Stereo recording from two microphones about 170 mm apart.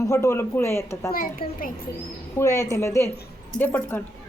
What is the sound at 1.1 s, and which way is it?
Speech, 55° left (ahead or behind).